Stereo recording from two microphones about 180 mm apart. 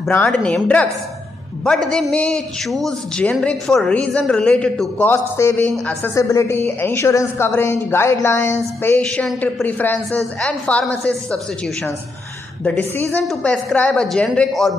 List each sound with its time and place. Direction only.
0.1 s a man's voice: 5° left (ahead or behind)
13.0 s a man's voice: 5° left (ahead or behind)